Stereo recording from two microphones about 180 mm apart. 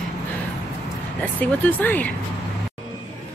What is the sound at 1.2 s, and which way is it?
Speech, 10° left (ahead or behind).